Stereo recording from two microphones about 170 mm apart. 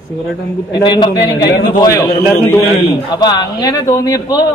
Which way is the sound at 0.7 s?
25° left (ahead or behind).